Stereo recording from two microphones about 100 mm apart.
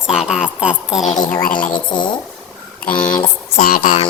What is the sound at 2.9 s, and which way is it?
Speech, 10° left (ahead or behind).